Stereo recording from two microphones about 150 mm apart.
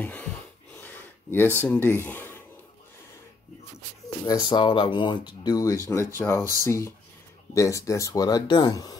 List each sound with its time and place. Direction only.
0.0 s wheeze: 10° left (ahead or behind)
0.7 s gasp: 15° left (ahead or behind)
1.7 s speech: 15° left (ahead or behind)
4.3 s speech: 25° left (ahead or behind)